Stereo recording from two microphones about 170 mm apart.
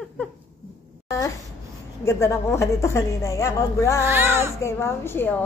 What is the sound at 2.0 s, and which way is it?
Speech, 15° left (ahead or behind).